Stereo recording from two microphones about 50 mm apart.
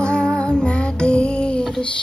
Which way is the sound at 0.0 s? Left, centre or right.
Centre.